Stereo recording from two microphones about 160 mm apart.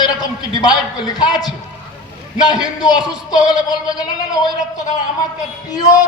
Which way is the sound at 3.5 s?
25° left (ahead or behind).